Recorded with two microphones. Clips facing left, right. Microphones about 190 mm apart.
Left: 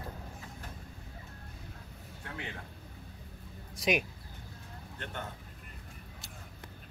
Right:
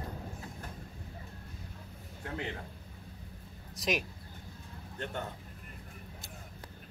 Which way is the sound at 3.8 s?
Centre (ahead or behind).